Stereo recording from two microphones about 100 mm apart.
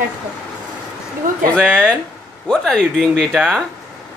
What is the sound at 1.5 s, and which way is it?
Speech, 10° left (ahead or behind).